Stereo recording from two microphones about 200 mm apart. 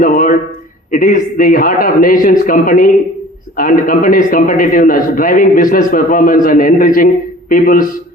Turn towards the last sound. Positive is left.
turn(degrees=45)  # may be behind; listen again after turning